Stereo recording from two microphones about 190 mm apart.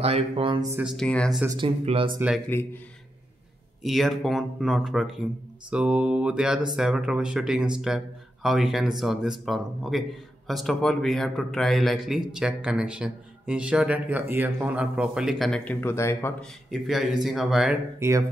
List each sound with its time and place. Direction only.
0.0 s speech: 30° right (ahead or behind)
0.7 s speech: 10° right (ahead or behind)
0.9 s speech: 5° left (ahead or behind)
1.6 s speech: 30° right (ahead or behind)
2.1 s speech: 5° right (ahead or behind)
3.8 s speech: centre (ahead or behind)
16.7 s speech: centre (ahead or behind)
17.9 s speech: 15° right (ahead or behind)